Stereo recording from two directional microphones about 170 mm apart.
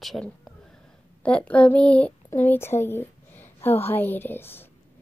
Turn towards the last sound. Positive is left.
turn(degrees=15)  # may be behind; listen again after turning